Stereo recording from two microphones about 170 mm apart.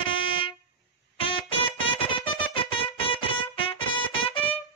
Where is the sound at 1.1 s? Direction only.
30° left (ahead or behind).